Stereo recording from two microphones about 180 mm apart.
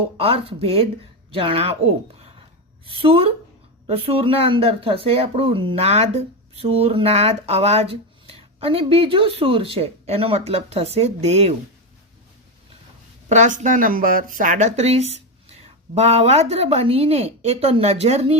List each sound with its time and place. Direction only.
0.2 s speech: 30° right (ahead or behind)
13.2 s speech: 40° right (ahead or behind)